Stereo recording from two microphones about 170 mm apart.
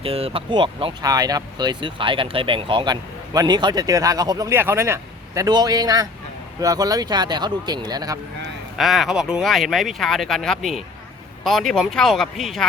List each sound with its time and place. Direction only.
0.0 s speech: 35° right (ahead or behind)
8.8 s speech: centre (ahead or behind)